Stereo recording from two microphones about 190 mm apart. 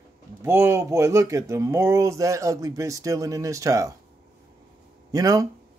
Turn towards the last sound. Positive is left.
turn(degrees=-20)  # may be behind; listen again after turning